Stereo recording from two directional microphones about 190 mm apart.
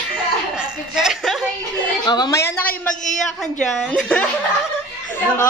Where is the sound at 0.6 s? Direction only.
5° right (ahead or behind).